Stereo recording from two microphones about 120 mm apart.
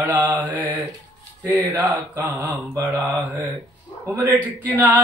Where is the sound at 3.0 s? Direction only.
15° right (ahead or behind).